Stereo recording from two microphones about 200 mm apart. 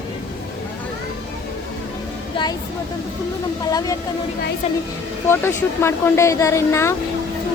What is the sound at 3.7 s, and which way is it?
Speech, 20° left (ahead or behind).